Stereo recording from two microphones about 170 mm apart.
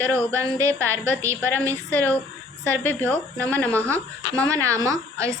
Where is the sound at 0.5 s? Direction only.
20° right (ahead or behind).